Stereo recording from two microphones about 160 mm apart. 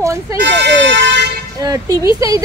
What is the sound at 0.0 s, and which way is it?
Speech, 20° right (ahead or behind).